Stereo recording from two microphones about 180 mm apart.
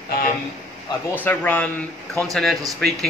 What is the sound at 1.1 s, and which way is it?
Speech, 10° left (ahead or behind).